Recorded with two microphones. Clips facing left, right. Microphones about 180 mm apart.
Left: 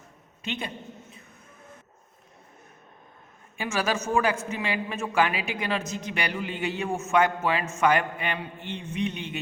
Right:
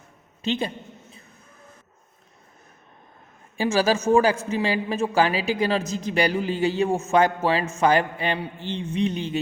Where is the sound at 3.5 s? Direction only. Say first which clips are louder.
Right 7 dB; 30° right (ahead or behind).